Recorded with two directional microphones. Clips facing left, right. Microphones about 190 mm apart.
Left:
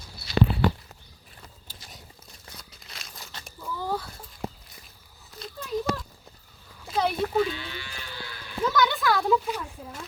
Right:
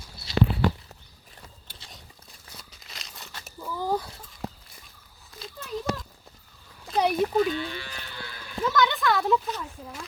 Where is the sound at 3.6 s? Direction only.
15° right (ahead or behind).